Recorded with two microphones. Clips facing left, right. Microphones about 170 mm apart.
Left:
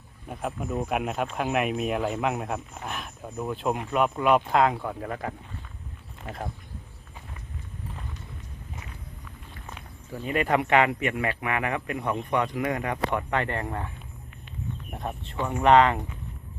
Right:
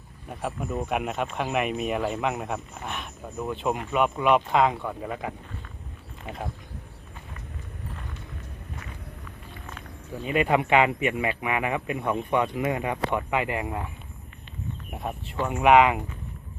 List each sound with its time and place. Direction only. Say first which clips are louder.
0.3 s speech: even; centre (ahead or behind)
10.2 s a man's voice: right 1 dB; 20° right (ahead or behind)
12.6 s a man's voice: right 1 dB; 25° right (ahead or behind)
13.1 s speech: right 1 dB; 5° right (ahead or behind)
14.8 s speech: right 3 dB; 5° right (ahead or behind)